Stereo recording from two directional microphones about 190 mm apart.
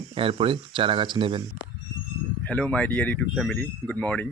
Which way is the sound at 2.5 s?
5° left (ahead or behind).